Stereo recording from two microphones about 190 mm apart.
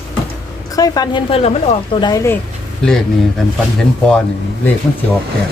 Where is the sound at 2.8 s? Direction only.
Centre (ahead or behind).